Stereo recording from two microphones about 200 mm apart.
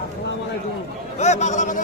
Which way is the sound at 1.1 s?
35° left (ahead or behind).